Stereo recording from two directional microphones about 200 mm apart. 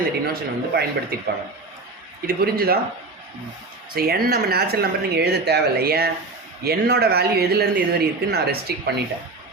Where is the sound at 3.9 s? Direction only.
50° right (ahead or behind).